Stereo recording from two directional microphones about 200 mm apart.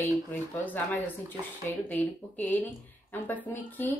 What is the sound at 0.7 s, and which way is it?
A woman's voice, 10° left (ahead or behind).